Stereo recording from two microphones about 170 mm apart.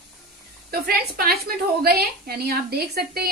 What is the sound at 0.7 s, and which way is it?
A woman's voice, 60° right (ahead or behind).